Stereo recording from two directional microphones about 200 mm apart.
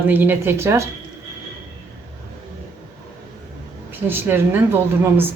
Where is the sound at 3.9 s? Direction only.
10° right (ahead or behind).